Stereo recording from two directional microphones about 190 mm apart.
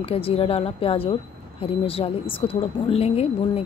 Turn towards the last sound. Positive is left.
turn(degrees=30)  # may be behind; listen again after turning